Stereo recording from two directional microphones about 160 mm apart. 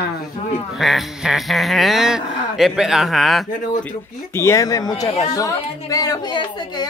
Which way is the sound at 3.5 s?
55° left (ahead or behind).